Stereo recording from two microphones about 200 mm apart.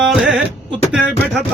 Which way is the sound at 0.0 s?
Centre (ahead or behind).